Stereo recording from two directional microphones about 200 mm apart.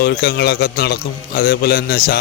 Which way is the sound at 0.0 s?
50° left (ahead or behind).